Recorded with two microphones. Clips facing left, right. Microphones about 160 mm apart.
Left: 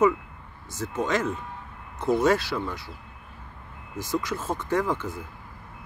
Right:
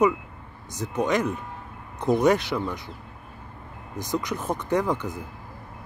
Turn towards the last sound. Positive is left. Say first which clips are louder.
# right 2 dB
turn(degrees=-15)  # may be behind; listen again after turning